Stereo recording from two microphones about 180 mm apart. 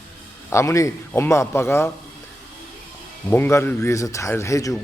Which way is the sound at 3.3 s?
15° left (ahead or behind).